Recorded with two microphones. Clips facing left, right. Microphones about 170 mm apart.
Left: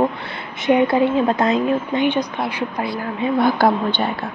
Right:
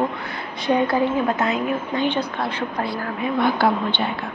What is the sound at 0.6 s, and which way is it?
Speech, 20° left (ahead or behind).